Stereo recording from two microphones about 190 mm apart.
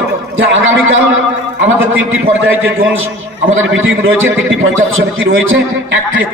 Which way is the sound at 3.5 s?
90° right.